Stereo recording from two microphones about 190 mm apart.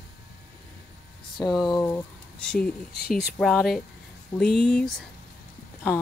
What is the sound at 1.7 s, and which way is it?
Speech, 15° left (ahead or behind).